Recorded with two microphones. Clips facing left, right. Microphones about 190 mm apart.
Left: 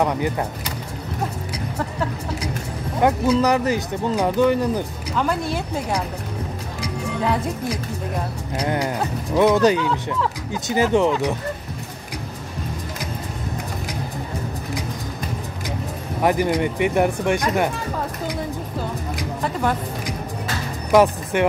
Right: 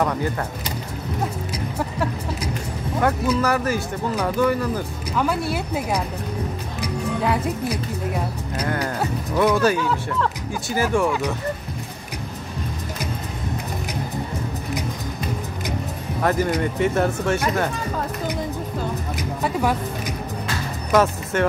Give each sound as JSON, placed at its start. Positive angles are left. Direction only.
{"t": 0.0, "sound": "speech", "side_deg": 15}
{"t": 3.0, "sound": "speech", "side_deg": 20}
{"t": 5.1, "sound": "speech", "side_deg": -5}
{"t": 8.6, "sound": "speech", "side_deg": 20}
{"t": 16.2, "sound": "speech", "side_deg": 15}
{"t": 19.4, "sound": "speech", "side_deg": -5}
{"t": 20.9, "sound": "speech", "side_deg": 15}